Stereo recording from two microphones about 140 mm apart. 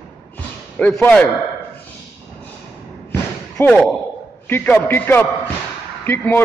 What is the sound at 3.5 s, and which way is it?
A man's voice, 10° left (ahead or behind).